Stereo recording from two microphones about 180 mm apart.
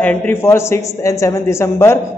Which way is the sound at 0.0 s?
5° left (ahead or behind).